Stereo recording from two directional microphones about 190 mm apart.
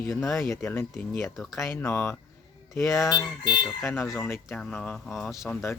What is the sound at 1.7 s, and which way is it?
Speech, 10° left (ahead or behind).